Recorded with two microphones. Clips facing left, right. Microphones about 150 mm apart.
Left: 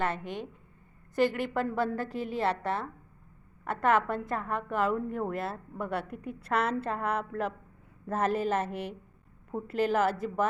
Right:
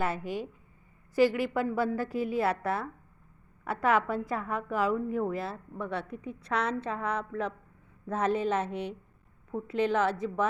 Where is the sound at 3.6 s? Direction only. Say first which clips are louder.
Even; 5° right (ahead or behind).